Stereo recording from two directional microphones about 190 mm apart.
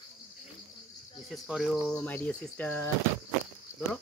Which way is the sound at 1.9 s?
10° left (ahead or behind).